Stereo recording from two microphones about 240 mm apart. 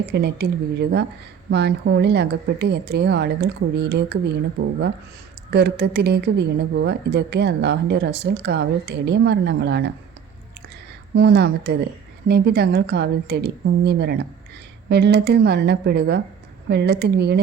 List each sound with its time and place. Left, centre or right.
0.1 s a woman's voice: right
5.5 s a woman's voice: right
11.1 s a woman's voice: right